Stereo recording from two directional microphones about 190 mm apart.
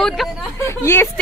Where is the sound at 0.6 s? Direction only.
15° left (ahead or behind).